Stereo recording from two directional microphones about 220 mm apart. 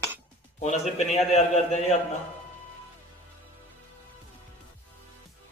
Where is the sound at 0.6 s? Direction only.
30° left (ahead or behind).